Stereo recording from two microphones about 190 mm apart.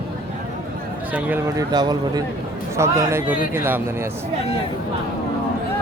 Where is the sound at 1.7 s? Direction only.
20° right (ahead or behind).